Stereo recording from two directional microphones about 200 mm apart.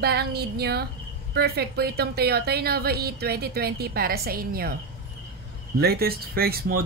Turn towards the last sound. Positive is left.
turn(degrees=-50)  # may be behind; listen again after turning